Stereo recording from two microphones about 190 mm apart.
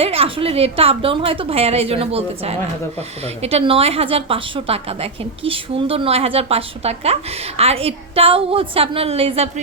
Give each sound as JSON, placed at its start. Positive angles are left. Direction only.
{"t": 0.0, "sound": "a woman's voice", "side_deg": -30}